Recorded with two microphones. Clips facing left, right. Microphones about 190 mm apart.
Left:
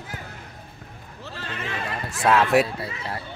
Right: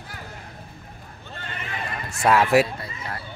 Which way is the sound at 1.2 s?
90° left.